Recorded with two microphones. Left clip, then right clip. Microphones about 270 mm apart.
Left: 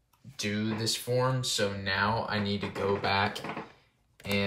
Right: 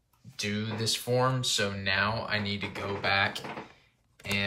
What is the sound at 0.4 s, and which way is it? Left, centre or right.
Speech, centre.